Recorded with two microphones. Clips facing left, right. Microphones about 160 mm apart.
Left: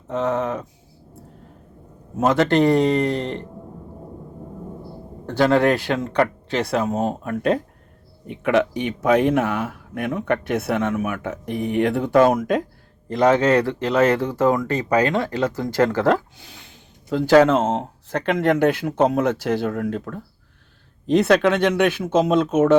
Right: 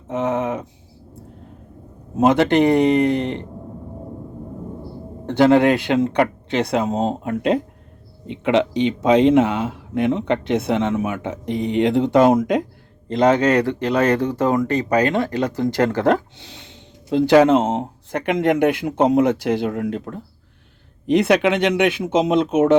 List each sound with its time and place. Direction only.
0.1 s speech: 20° right (ahead or behind)
2.1 s speech: 20° right (ahead or behind)
5.2 s speech: 20° right (ahead or behind)